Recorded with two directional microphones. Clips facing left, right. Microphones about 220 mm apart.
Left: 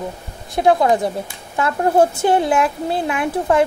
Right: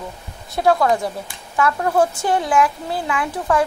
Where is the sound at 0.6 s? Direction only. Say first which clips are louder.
Left 2 dB; 20° left (ahead or behind).